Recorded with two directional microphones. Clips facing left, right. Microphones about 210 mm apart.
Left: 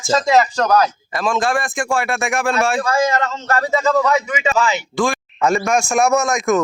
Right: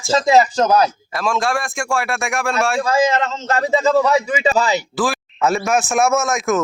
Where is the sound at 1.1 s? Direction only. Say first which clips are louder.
Left 2 dB; centre (ahead or behind).